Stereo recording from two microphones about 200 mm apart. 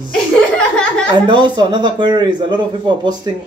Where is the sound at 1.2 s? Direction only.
20° right (ahead or behind).